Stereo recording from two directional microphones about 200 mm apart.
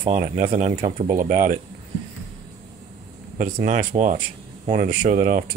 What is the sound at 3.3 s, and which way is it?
Speech, 40° right (ahead or behind).